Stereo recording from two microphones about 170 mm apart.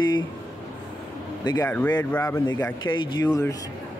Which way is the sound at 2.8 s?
25° left (ahead or behind).